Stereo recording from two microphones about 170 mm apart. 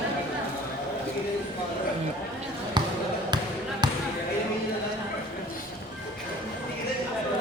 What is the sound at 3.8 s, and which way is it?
Basketball bounce, 25° right (ahead or behind).